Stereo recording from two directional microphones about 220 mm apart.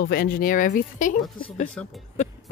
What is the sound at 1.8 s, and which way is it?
Speech, 5° left (ahead or behind).